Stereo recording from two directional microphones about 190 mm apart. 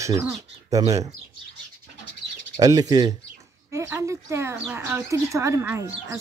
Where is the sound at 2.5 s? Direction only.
20° right (ahead or behind).